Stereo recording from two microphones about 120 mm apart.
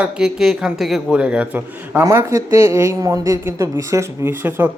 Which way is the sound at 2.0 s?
25° right (ahead or behind).